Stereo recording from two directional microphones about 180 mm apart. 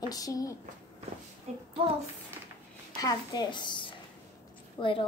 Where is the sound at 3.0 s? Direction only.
20° left (ahead or behind).